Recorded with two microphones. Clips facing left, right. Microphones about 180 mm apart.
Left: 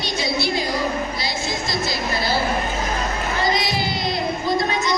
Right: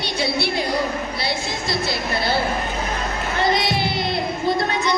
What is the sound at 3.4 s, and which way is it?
Crowd, 60° right (ahead or behind).